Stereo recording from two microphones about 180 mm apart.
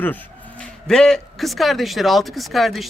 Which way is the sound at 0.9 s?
5° left (ahead or behind).